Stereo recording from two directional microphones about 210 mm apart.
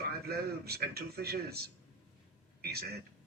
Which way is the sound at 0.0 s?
50° right (ahead or behind).